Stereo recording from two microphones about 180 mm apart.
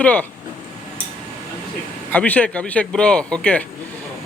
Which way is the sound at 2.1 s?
10° left (ahead or behind).